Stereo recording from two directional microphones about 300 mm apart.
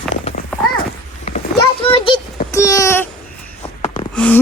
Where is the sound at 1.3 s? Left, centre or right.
Centre.